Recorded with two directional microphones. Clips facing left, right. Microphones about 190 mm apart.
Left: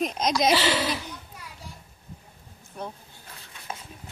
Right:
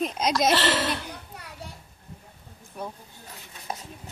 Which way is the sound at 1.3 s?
65° right (ahead or behind).